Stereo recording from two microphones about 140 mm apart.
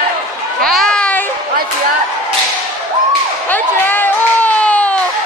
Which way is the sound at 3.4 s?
15° left (ahead or behind).